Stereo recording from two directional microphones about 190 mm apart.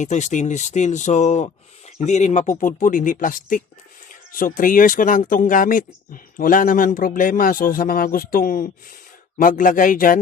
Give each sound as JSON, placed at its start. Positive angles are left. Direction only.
{"t": 0.0, "sound": "a man's voice", "side_deg": 40}